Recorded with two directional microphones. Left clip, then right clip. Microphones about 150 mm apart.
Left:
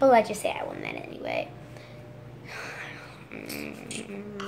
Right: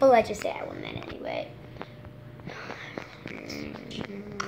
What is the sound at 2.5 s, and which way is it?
Whispering, 10° left (ahead or behind).